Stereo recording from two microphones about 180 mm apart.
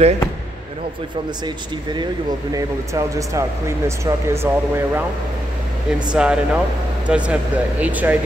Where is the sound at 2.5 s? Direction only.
20° right (ahead or behind).